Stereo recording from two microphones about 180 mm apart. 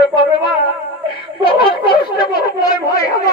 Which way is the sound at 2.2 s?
20° left (ahead or behind).